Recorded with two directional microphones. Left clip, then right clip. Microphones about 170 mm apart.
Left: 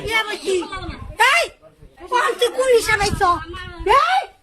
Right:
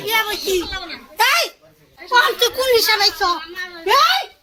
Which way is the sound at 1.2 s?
Centre (ahead or behind).